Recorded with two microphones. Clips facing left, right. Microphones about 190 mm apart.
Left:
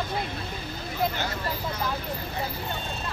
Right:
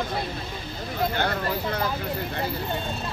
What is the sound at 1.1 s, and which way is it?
Speech, 60° right (ahead or behind).